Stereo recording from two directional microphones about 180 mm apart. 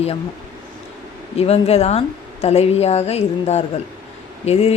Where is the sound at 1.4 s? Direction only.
35° left (ahead or behind).